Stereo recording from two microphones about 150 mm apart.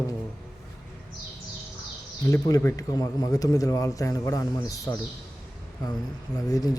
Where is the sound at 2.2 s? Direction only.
25° left (ahead or behind).